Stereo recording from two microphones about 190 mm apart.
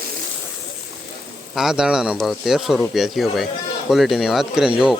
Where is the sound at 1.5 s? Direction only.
5° right (ahead or behind).